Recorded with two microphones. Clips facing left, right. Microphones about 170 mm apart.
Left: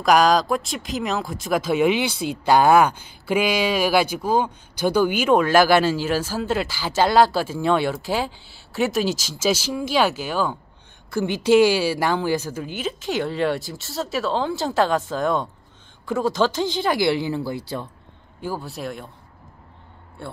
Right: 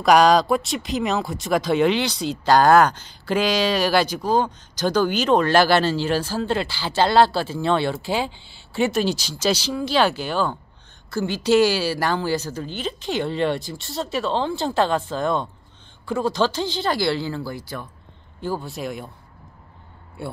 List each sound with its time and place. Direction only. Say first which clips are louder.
0.0 s a man's voice: right 2 dB; centre (ahead or behind)
16.8 s speech: left 2 dB; 15° left (ahead or behind)
18.4 s a man's voice: right 2 dB; 5° left (ahead or behind)
20.2 s speech: right 3 dB; 10° right (ahead or behind)